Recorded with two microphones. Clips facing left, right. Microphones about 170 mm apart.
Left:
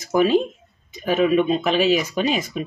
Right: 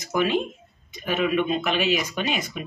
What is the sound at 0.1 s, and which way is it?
Speech, 40° left (ahead or behind).